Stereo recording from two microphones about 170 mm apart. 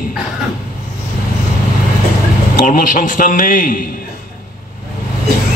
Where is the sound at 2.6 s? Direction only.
50° left (ahead or behind).